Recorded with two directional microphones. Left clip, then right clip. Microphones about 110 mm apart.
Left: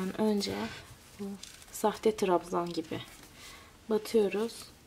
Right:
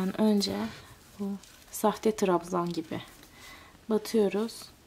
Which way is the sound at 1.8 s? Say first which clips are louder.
Right 2 dB; 35° right (ahead or behind).